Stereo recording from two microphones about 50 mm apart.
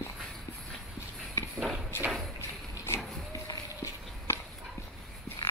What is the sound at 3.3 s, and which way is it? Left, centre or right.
Walk, left.